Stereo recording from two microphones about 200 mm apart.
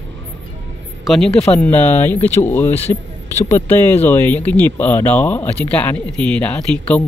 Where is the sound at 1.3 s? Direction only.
30° left (ahead or behind).